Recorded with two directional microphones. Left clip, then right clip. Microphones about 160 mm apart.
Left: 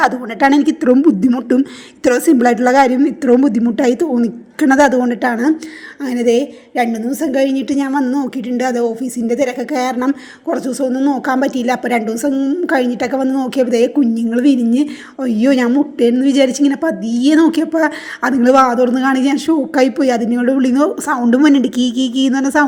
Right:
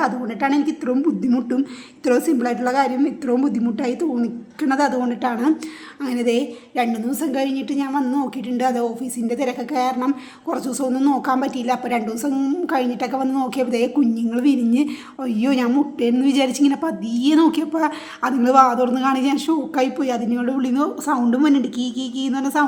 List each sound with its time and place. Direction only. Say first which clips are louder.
0.0 s a woman's voice: left 8 dB; 40° left (ahead or behind)
8.0 s a woman's voice: left 4 dB; 20° left (ahead or behind)
10.1 s a man's voice: left 5 dB; 15° left (ahead or behind)
11.1 s a woman's voice: left 4 dB; 25° left (ahead or behind)
12.3 s a man's voice: left 3 dB; 10° left (ahead or behind)
12.6 s a woman's voice: left 6 dB; 25° left (ahead or behind)